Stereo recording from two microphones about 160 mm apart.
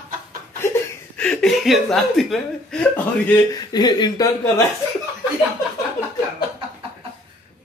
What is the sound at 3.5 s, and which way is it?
Speech, 25° left (ahead or behind).